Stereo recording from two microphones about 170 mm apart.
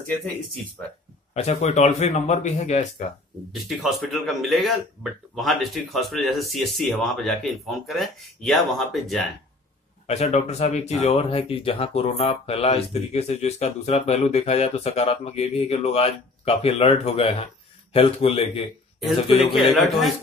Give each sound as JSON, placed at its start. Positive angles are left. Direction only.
{"t": 1.3, "sound": "speech", "side_deg": 40}
{"t": 3.6, "sound": "speech", "side_deg": 0}
{"t": 10.0, "sound": "speech", "side_deg": 40}
{"t": 19.3, "sound": "speech", "side_deg": 0}